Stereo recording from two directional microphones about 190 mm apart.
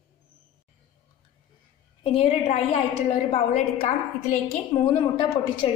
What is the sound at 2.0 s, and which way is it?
A woman's voice, 30° left (ahead or behind).